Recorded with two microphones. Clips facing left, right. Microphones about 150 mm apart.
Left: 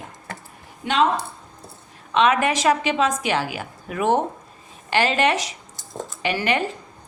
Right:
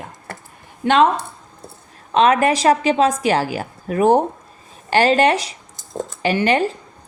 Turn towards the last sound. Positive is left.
turn(degrees=-35)  # may be behind; listen again after turning